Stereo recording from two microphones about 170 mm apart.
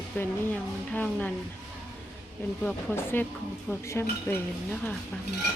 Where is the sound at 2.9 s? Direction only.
10° left (ahead or behind).